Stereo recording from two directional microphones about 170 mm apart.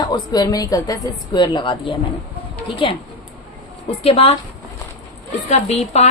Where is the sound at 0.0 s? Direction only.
25° left (ahead or behind).